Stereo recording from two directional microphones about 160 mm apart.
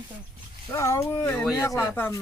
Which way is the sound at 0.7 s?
20° left (ahead or behind).